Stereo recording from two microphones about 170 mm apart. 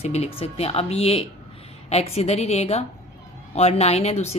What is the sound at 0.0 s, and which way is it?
A woman's voice, 40° left (ahead or behind).